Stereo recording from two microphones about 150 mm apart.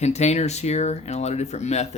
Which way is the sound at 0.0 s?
50° left (ahead or behind).